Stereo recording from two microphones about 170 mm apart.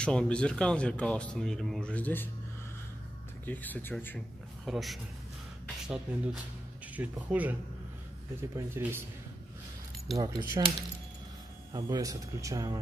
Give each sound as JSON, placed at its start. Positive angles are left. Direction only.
{"t": 0.0, "sound": "speech", "side_deg": 5}
{"t": 3.4, "sound": "speech", "side_deg": 10}
{"t": 4.6, "sound": "speech", "side_deg": 0}
{"t": 10.1, "sound": "speech", "side_deg": -20}
{"t": 11.7, "sound": "speech", "side_deg": -20}